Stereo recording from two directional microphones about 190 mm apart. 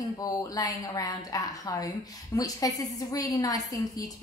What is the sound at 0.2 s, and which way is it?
A woman's voice, 20° left (ahead or behind).